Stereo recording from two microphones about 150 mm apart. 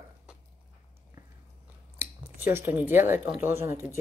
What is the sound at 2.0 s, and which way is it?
Speech, 15° right (ahead or behind).